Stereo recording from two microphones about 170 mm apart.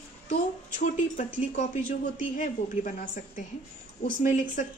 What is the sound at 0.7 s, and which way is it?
A woman's voice, 50° left (ahead or behind).